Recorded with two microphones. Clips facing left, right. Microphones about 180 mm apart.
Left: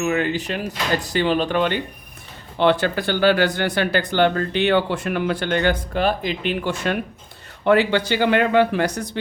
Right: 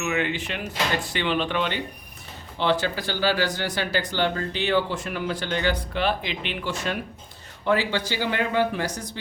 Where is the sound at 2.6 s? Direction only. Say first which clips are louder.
Left 6 dB; 60° left (ahead or behind).